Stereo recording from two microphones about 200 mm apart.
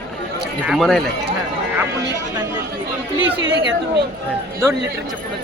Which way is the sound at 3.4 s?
60° right (ahead or behind).